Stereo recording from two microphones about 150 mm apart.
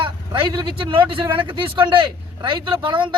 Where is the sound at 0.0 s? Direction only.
35° right (ahead or behind).